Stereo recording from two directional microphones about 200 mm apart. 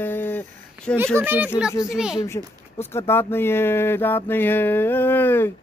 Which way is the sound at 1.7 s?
15° left (ahead or behind).